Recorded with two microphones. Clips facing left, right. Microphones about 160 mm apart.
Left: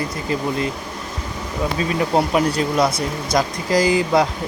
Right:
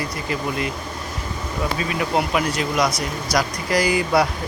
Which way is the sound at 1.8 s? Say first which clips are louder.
Left 4 dB; 30° left (ahead or behind).